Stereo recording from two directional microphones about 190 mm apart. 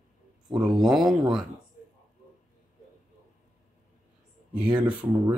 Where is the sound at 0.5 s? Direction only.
Centre (ahead or behind).